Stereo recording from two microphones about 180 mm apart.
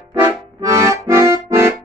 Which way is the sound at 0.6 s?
15° right (ahead or behind).